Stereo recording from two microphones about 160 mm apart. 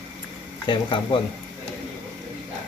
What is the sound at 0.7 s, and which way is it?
Speech, 30° left (ahead or behind).